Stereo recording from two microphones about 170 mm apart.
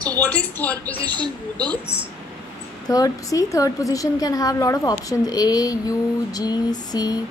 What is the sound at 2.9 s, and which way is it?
A woman's voice, 20° left (ahead or behind).